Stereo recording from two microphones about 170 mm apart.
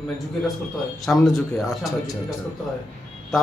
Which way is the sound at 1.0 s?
Centre (ahead or behind).